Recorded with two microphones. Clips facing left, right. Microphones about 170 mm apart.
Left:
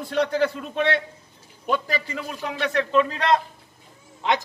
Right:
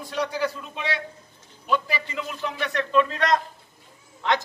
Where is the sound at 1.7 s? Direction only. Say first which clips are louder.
Even; 45° left (ahead or behind).